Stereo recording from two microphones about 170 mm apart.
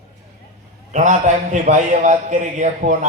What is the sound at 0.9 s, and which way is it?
A man's voice, 45° right (ahead or behind).